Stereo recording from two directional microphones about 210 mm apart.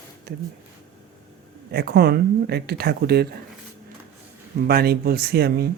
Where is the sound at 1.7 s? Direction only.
50° right (ahead or behind).